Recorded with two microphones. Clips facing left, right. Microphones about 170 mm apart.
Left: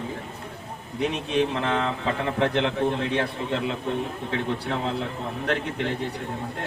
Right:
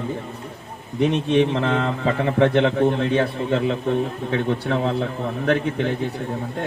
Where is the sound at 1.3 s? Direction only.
60° right (ahead or behind).